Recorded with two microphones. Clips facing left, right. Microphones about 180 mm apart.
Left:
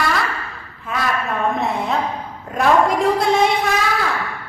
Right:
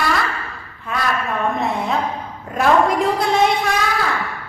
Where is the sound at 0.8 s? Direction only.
Centre (ahead or behind).